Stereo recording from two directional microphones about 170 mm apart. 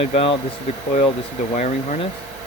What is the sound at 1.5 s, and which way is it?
Speech, 45° left (ahead or behind).